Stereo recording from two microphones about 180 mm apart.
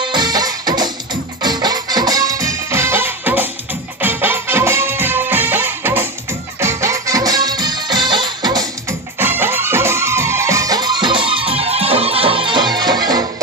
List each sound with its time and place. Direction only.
0.0 s music: 25° right (ahead or behind)